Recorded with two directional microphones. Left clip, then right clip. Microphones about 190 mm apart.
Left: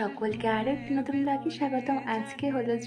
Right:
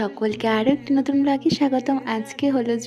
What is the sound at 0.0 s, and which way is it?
A woman's voice, 45° right (ahead or behind).